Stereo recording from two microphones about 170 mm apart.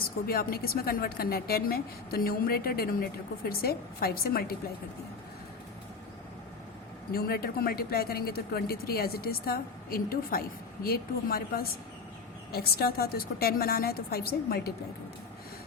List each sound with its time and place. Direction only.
0.3 s speech: 60° left (ahead or behind)
7.1 s speech: 65° left (ahead or behind)